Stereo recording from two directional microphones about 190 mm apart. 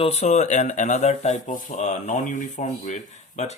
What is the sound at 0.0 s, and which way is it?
Speech, 35° left (ahead or behind).